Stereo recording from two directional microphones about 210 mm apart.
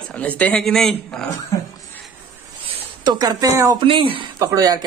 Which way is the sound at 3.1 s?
20° right (ahead or behind).